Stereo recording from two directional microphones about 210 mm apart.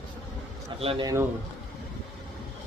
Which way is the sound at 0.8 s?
30° right (ahead or behind).